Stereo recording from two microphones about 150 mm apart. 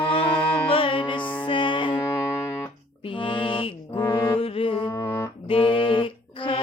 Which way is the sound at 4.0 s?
20° left (ahead or behind).